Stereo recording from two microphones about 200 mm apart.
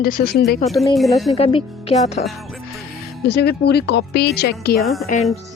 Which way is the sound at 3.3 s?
55° left (ahead or behind).